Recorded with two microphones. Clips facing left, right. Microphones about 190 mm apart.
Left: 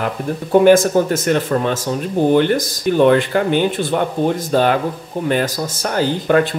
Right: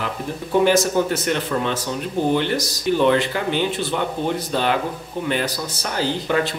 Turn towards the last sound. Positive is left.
turn(degrees=50)  # may be behind; listen again after turning